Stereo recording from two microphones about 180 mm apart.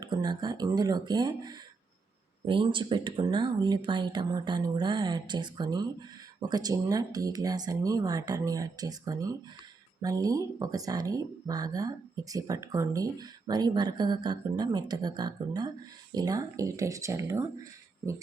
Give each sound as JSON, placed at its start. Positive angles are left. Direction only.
{"t": 0.0, "sound": "speech", "side_deg": -25}